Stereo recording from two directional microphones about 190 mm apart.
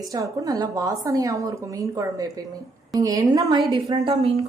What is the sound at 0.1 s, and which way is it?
A woman's voice, 20° right (ahead or behind).